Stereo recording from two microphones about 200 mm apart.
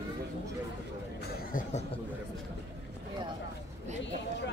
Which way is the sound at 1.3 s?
45° left (ahead or behind).